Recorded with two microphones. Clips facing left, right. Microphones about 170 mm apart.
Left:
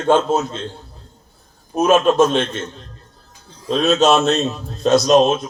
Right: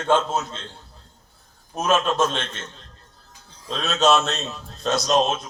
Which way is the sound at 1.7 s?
10° left (ahead or behind).